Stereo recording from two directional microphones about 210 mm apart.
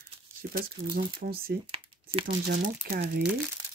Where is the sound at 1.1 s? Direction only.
45° right (ahead or behind).